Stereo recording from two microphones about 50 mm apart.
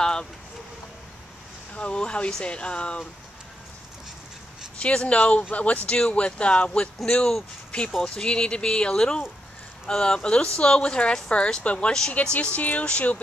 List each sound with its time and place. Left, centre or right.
0.0 s a sound: centre
1.7 s speech: left
4.7 s speech: left